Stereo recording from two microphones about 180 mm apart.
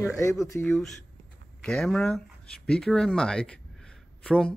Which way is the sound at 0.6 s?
Centre (ahead or behind).